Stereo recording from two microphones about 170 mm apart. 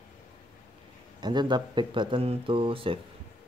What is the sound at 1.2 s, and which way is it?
Speech, 25° right (ahead or behind).